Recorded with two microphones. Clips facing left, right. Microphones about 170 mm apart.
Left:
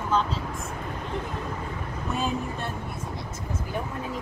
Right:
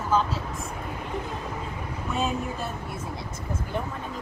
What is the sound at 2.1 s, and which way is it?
Speech, centre (ahead or behind).